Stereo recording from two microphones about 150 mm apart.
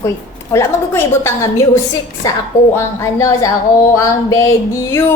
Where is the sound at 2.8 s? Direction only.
20° left (ahead or behind).